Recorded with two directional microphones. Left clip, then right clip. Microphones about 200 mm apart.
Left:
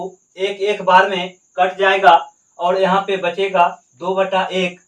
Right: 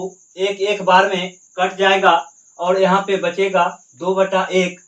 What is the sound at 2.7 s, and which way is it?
Speech, 15° right (ahead or behind).